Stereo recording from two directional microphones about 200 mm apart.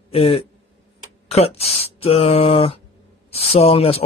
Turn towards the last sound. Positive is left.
turn(degrees=30)  # may be behind; listen again after turning